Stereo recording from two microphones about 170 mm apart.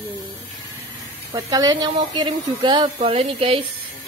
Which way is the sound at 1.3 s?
20° right (ahead or behind).